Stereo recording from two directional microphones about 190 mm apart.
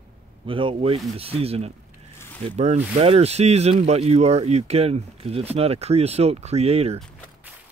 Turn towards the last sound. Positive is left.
turn(degrees=-35)  # may be behind; listen again after turning